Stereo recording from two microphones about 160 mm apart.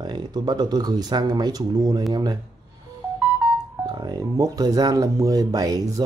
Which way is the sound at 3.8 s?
25° right (ahead or behind).